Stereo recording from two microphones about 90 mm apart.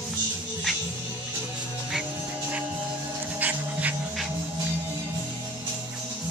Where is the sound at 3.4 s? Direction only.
15° right (ahead or behind).